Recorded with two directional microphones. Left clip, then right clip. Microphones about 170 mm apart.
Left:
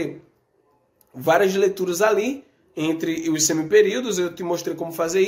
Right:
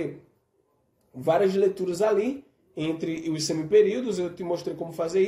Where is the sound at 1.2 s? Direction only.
5° right (ahead or behind).